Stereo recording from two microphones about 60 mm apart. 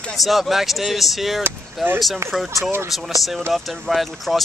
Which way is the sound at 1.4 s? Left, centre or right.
Right.